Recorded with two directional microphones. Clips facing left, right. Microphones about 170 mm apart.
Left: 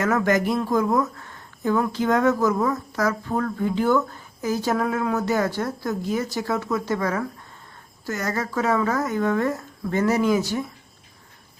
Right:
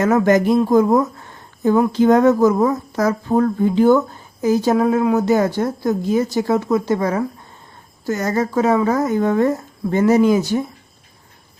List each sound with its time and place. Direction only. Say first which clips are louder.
0.0 s speech: right 6 dB; 20° right (ahead or behind)